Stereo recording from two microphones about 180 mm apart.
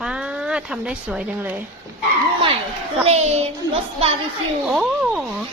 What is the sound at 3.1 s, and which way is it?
Speech, 35° right (ahead or behind).